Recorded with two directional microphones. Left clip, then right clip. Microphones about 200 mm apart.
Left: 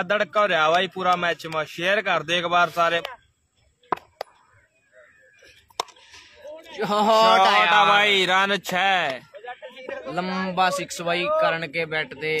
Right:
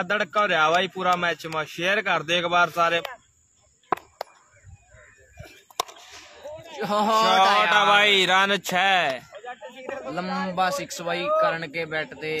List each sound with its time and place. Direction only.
0.0 s speech: 10° left (ahead or behind)
5.4 s a sound: 10° right (ahead or behind)
6.7 s a man's voice: 40° left (ahead or behind)
7.4 s a sound: 40° left (ahead or behind)
7.9 s speech: centre (ahead or behind)
9.4 s speech: 35° left (ahead or behind)